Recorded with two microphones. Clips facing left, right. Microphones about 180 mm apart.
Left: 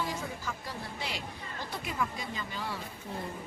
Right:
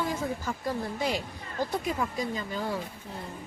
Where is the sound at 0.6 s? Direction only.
45° right (ahead or behind).